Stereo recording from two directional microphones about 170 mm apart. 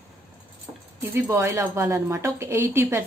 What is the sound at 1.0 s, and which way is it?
A woman's voice, 15° right (ahead or behind).